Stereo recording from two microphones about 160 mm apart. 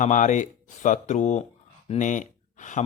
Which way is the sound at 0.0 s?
50° left (ahead or behind).